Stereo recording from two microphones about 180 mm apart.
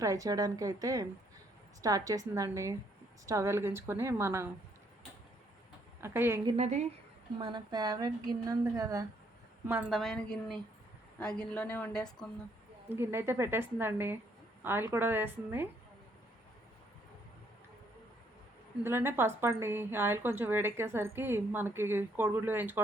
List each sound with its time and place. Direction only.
0.0 s a woman's voice: 20° right (ahead or behind)
6.0 s a woman's voice: 15° right (ahead or behind)
6.6 s a woman's voice: 40° right (ahead or behind)
7.3 s a woman's voice: 25° right (ahead or behind); by 10.0 s 10° right (ahead or behind)
10.0 s speech: 5° left (ahead or behind)
12.9 s a woman's voice: 10° right (ahead or behind)
18.8 s a woman's voice: 15° right (ahead or behind)